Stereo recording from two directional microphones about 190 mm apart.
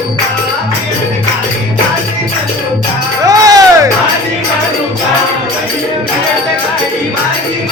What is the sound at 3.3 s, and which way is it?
Music, 20° right (ahead or behind).